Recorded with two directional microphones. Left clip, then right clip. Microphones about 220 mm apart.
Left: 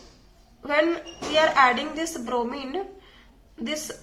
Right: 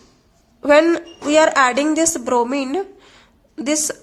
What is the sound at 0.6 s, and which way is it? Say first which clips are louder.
A woman's voice: right 10 dB; 55° right (ahead or behind).